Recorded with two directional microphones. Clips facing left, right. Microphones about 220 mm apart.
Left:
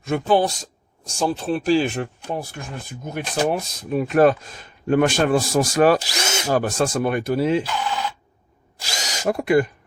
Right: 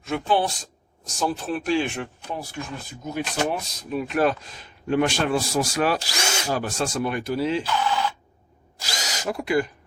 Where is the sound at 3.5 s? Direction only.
45° left (ahead or behind).